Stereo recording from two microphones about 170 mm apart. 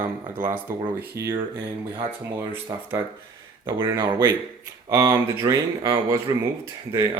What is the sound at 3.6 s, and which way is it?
Speech, 25° right (ahead or behind).